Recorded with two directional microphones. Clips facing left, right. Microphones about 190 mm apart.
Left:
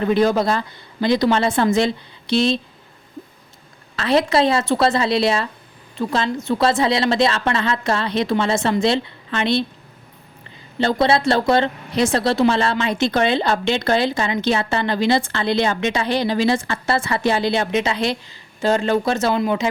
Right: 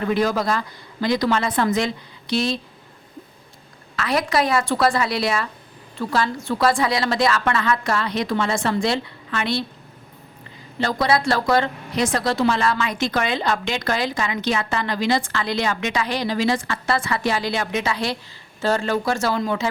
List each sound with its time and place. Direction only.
0.0 s speech: 25° left (ahead or behind)
3.9 s speech: 25° left (ahead or behind)
10.8 s speech: 25° left (ahead or behind)